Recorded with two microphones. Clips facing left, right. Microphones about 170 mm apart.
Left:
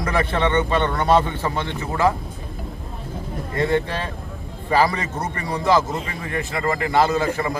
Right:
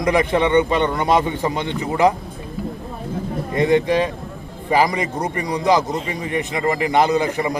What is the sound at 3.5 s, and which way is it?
A man's voice, 15° right (ahead or behind).